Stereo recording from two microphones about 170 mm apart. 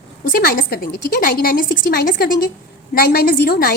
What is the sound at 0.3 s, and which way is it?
A woman's voice, 60° left (ahead or behind).